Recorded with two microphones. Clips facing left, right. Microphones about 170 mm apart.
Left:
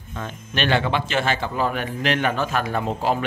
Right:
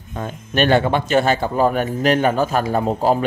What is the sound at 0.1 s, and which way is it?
A man's voice, 40° right (ahead or behind).